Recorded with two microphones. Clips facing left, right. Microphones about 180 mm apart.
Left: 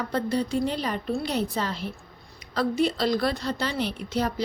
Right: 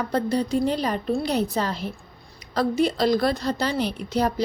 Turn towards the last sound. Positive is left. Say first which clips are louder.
# right 4 dB
turn(degrees=-40)  # may be behind; listen again after turning